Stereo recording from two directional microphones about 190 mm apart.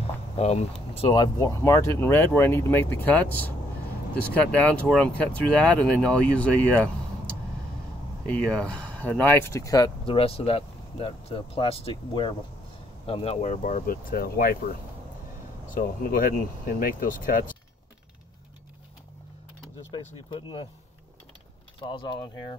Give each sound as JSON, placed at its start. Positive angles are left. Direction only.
{"t": 0.0, "sound": "a sound", "side_deg": 35}
{"t": 0.9, "sound": "speech", "side_deg": 25}
{"t": 4.5, "sound": "speech", "side_deg": 5}
{"t": 8.3, "sound": "speech", "side_deg": 5}
{"t": 19.9, "sound": "speech", "side_deg": 25}
{"t": 21.8, "sound": "speech", "side_deg": 25}